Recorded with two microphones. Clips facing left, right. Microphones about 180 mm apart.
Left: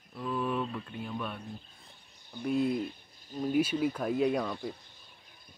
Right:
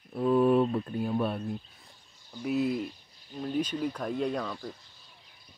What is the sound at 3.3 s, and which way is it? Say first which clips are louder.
Speech: left 2 dB; 10° left (ahead or behind).